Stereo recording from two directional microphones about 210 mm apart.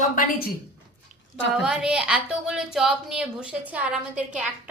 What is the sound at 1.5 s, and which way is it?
A woman's voice, 5° right (ahead or behind).